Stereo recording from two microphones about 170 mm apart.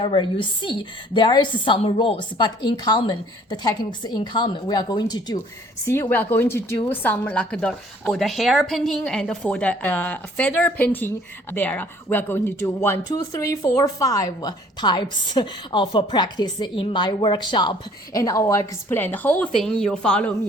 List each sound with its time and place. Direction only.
0.0 s a woman's voice: 30° left (ahead or behind); by 20.3 s 5° left (ahead or behind)